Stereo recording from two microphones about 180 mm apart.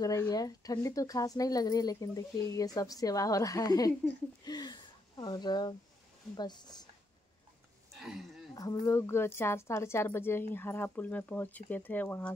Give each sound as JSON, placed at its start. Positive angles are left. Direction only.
{"t": 0.0, "sound": "speech", "side_deg": 20}
{"t": 8.0, "sound": "a sound", "side_deg": 0}
{"t": 8.5, "sound": "a woman's voice", "side_deg": 20}